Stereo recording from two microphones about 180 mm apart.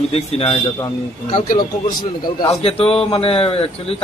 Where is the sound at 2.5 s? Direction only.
35° left (ahead or behind).